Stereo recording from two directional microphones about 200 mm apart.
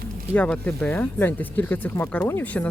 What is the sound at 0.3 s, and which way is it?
Speech, 5° left (ahead or behind).